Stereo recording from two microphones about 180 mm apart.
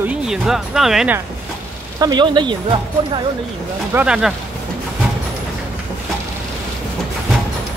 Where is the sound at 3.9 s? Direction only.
5° right (ahead or behind).